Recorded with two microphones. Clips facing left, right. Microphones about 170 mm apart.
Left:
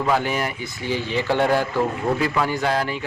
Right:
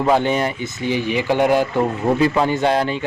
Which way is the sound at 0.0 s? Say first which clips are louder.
Right 5 dB; 25° right (ahead or behind).